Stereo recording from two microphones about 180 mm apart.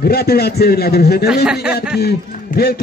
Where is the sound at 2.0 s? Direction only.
60° left (ahead or behind).